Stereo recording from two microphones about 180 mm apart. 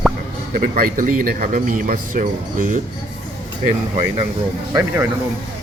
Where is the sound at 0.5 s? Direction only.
50° right (ahead or behind).